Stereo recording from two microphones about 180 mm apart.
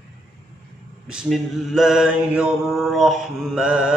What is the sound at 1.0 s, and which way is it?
Mantra, centre (ahead or behind).